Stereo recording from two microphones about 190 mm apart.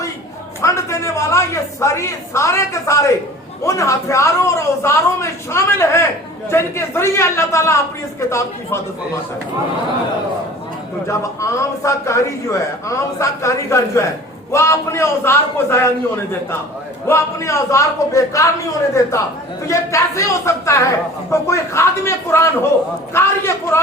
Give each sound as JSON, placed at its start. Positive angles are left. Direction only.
{"t": 0.6, "sound": "a woman's voice", "side_deg": 15}
{"t": 11.1, "sound": "a man's voice", "side_deg": 15}
{"t": 17.1, "sound": "a man's voice", "side_deg": 15}